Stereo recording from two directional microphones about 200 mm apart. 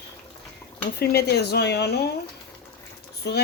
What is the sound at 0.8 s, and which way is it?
Speech, 50° left (ahead or behind).